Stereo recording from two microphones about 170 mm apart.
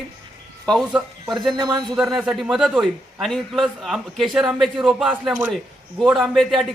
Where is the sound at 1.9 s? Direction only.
Centre (ahead or behind).